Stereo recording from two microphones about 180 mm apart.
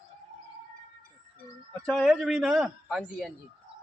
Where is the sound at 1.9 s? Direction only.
Centre (ahead or behind).